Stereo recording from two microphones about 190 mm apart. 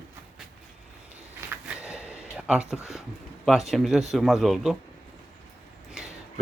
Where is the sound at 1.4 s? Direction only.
5° right (ahead or behind).